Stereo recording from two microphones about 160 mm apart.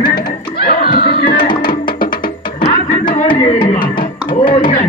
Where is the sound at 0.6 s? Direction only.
70° left (ahead or behind).